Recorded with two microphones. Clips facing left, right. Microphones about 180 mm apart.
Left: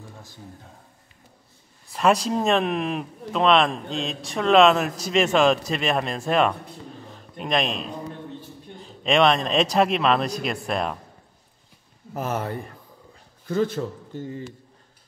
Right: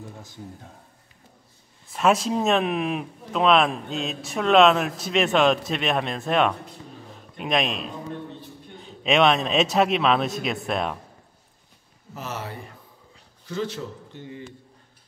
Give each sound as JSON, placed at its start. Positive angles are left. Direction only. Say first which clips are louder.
{"t": 1.9, "sound": "speech", "louder": "left 1 dB", "side_deg": 0}
{"t": 7.1, "sound": "a sound", "louder": "even", "side_deg": 0}
{"t": 8.7, "sound": "speech", "louder": "even", "side_deg": 0}
{"t": 12.1, "sound": "a man's voice", "louder": "left 6 dB", "side_deg": 50}